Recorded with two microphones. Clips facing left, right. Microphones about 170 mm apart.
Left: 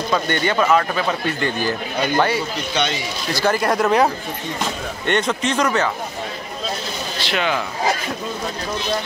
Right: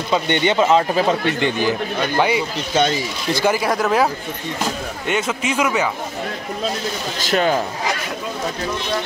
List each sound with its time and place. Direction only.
0.1 s speech: 20° right (ahead or behind)
2.7 s speech: 45° right (ahead or behind)
3.4 s a man's voice: 5° right (ahead or behind)
7.2 s speech: 40° right (ahead or behind)